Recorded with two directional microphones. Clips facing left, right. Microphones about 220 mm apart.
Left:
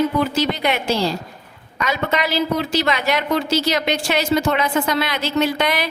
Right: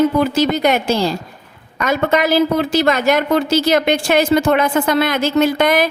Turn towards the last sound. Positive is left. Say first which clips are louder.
# right 6 dB
turn(degrees=-45)  # may be behind; listen again after turning